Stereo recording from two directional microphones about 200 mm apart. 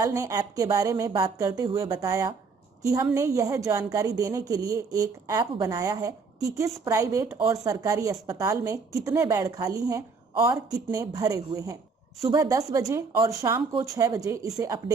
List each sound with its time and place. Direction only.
0.0 s a woman's voice: 15° right (ahead or behind)